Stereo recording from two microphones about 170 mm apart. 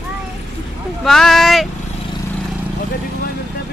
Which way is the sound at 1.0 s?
Centre (ahead or behind).